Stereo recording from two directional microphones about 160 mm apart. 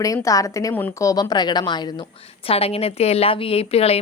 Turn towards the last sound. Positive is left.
turn(degrees=40)  # may be behind; listen again after turning